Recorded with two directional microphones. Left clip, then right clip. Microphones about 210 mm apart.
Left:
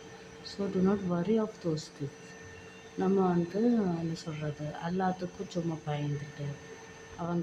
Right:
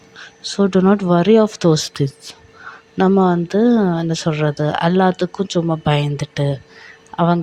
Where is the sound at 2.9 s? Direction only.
45° right (ahead or behind).